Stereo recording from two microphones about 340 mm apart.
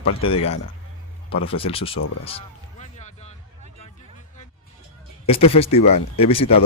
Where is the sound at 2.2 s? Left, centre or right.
Centre.